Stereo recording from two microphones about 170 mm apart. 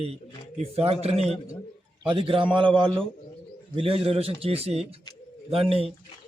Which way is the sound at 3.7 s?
35° right (ahead or behind).